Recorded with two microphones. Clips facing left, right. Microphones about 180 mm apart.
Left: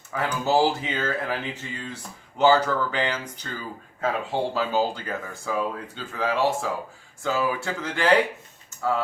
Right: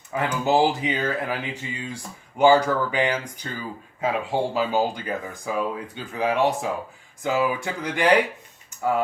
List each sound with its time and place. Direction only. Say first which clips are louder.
0.4 s speech: right 1 dB; 15° right (ahead or behind)